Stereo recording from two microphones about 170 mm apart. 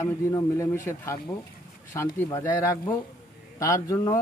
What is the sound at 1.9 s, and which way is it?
A man's voice, 15° left (ahead or behind).